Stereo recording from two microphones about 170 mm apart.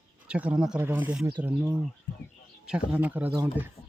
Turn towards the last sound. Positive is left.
turn(degrees=-10)  # may be behind; listen again after turning